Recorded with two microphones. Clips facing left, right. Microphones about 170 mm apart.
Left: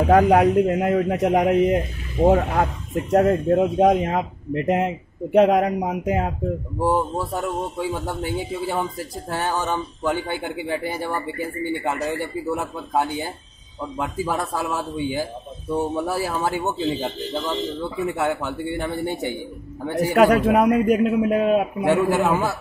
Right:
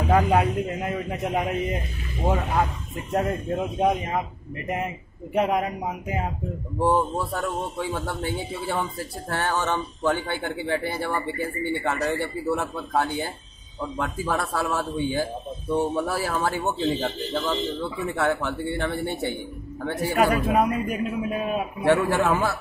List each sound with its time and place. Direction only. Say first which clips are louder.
0.0 s a man's voice: left 5 dB; 60° left (ahead or behind)
2.2 s speech: left 6 dB; 60° left (ahead or behind)
6.8 s speech: even; 10° left (ahead or behind)
20.2 s speech: left 5 dB; 70° left (ahead or behind)
22.1 s speech: left 2 dB; 15° left (ahead or behind)